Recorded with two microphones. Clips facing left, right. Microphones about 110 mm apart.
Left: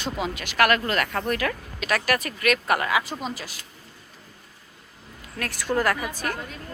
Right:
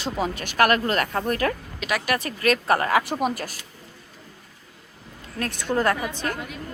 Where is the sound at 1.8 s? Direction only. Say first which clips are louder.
Left 1 dB; 15° right (ahead or behind).